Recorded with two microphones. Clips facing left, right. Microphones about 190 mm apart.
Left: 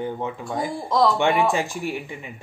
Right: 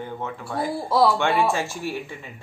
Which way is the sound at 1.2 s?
15° left (ahead or behind).